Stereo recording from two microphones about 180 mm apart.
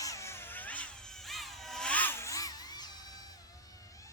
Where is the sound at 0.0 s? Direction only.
15° left (ahead or behind).